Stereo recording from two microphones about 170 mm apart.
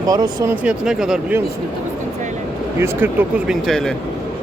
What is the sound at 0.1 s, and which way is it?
Speech, 20° right (ahead or behind).